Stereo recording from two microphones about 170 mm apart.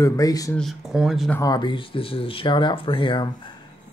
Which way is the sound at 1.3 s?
20° left (ahead or behind).